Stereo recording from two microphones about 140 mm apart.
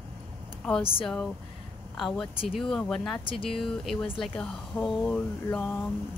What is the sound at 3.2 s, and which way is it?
Speech, 40° left (ahead or behind).